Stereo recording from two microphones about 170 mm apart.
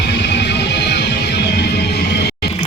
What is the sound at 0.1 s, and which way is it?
Music, 80° left.